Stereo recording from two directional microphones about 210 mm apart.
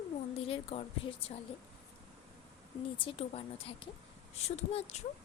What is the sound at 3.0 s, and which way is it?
A woman's voice, 25° left (ahead or behind).